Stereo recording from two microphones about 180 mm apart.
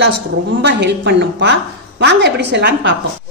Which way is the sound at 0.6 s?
70° right (ahead or behind).